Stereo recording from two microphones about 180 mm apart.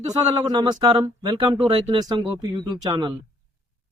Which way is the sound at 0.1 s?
25° right (ahead or behind).